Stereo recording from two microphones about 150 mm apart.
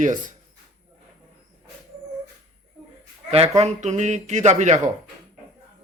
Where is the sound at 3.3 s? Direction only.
45° right (ahead or behind).